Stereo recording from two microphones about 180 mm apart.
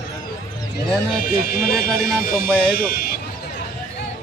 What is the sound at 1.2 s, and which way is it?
Speech, 55° left (ahead or behind).